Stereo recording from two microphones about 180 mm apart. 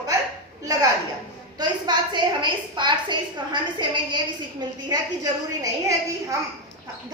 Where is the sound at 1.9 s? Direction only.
25° right (ahead or behind).